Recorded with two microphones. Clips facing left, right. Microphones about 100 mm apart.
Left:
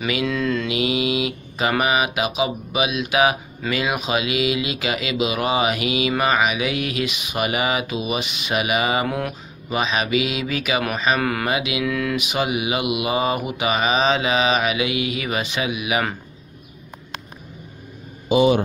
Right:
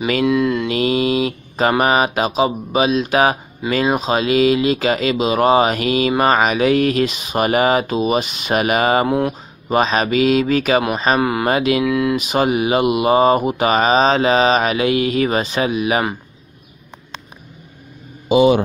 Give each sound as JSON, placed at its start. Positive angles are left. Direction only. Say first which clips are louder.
{"t": 0.2, "sound": "mantra", "louder": "right 7 dB", "side_deg": -20}
{"t": 0.7, "sound": "speech", "louder": "right 5 dB", "side_deg": -45}
{"t": 9.0, "sound": "mantra", "louder": "right 7 dB", "side_deg": -25}
{"t": 9.7, "sound": "mantra", "louder": "right 6 dB", "side_deg": -40}
{"t": 11.1, "sound": "mantra", "louder": "right 5 dB", "side_deg": -20}
{"t": 11.4, "sound": "mantra", "louder": "right 7 dB", "side_deg": -45}
{"t": 11.8, "sound": "mantra", "louder": "right 6 dB", "side_deg": -25}
{"t": 12.2, "sound": "speech", "louder": "right 6 dB", "side_deg": -40}